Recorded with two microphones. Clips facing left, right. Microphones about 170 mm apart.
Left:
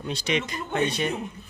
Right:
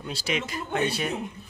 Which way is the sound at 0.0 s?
5° right (ahead or behind).